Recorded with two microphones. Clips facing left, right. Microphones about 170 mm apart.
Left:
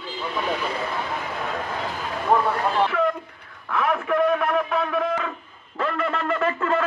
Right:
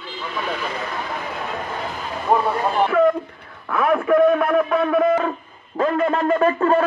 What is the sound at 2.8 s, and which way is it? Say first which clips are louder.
Speech: right 7 dB; 50° right (ahead or behind).